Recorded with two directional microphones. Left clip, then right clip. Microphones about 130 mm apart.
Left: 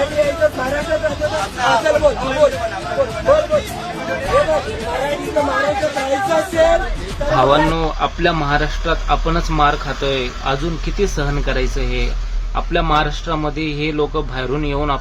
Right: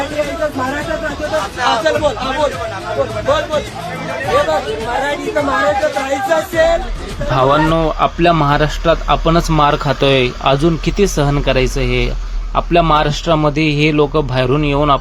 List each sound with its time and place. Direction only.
0.0 s a sound: centre (ahead or behind)
4.9 s speech: centre (ahead or behind)
7.3 s speech: 20° right (ahead or behind)
8.0 s a man's voice: 35° right (ahead or behind)
9.6 s speech: 55° right (ahead or behind)